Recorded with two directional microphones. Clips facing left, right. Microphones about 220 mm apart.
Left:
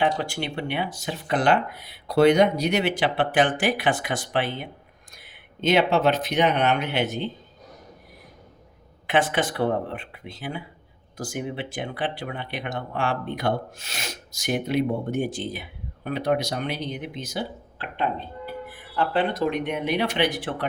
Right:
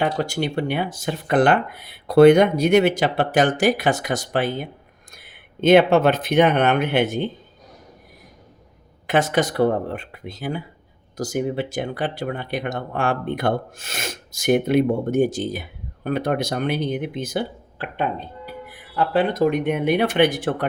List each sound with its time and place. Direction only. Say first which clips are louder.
0.0 s speech: right 3 dB; 45° right (ahead or behind)
5.1 s speech: right 4 dB; 55° right (ahead or behind)
9.0 s speech: right 3 dB; 40° right (ahead or behind)